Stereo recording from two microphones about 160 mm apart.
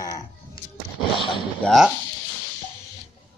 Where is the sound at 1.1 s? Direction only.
30° left (ahead or behind).